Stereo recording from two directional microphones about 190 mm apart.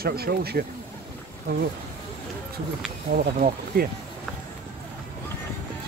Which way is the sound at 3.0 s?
50° right (ahead or behind).